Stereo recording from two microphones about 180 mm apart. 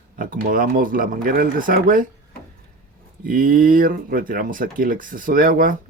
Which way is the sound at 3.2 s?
50° right (ahead or behind).